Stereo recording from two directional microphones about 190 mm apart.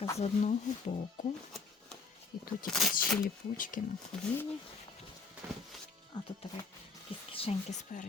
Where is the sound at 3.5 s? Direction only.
45° left (ahead or behind).